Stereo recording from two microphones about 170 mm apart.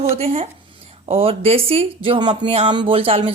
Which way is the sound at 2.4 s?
40° right (ahead or behind).